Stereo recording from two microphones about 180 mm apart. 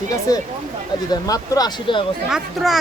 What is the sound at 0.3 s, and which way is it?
Speech, 20° left (ahead or behind).